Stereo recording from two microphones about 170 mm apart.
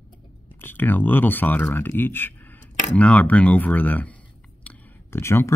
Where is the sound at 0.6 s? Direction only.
10° left (ahead or behind).